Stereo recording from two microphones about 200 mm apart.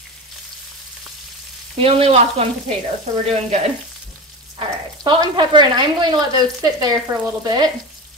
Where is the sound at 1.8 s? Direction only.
30° right (ahead or behind).